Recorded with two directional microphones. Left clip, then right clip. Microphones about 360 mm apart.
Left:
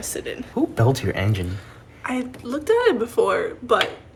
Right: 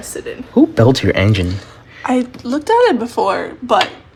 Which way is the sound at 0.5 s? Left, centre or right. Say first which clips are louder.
Right 10 dB; right.